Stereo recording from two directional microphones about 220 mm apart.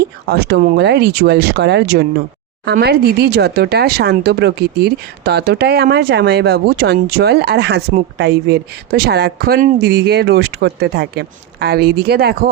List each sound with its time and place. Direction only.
0.0 s speech: 45° right (ahead or behind)